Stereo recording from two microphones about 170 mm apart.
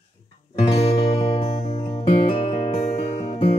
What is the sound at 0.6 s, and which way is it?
Music, 35° left (ahead or behind).